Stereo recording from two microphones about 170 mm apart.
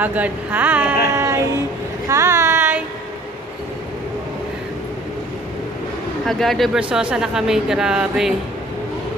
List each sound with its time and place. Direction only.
0.0 s speech: 10° right (ahead or behind)
2.0 s a sound: 15° right (ahead or behind)
6.2 s speech: centre (ahead or behind)